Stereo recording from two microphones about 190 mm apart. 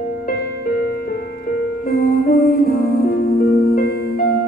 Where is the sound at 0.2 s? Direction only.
50° left (ahead or behind).